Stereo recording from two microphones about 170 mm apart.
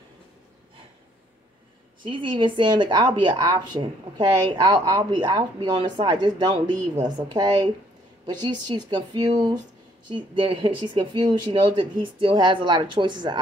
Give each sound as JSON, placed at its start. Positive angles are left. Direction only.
{"t": 2.0, "sound": "speech", "side_deg": -30}